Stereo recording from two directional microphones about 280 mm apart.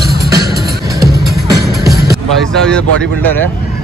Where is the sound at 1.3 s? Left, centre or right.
Centre.